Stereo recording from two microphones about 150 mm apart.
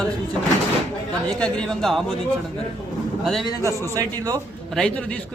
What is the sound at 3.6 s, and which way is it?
Speech, 20° right (ahead or behind).